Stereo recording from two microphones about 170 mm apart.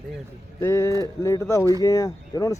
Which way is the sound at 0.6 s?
15° left (ahead or behind).